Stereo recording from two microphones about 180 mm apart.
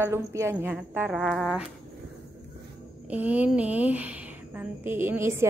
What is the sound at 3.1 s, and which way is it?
A woman's voice, 10° right (ahead or behind).